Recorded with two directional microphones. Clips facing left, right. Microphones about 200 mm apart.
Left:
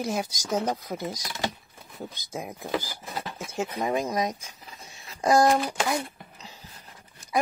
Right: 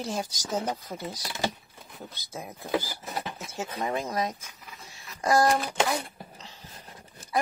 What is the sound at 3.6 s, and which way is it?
Speech, 15° left (ahead or behind).